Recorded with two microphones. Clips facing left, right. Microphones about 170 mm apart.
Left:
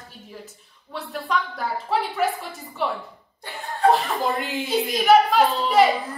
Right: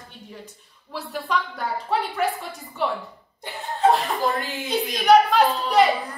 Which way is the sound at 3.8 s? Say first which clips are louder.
Even; 20° right (ahead or behind).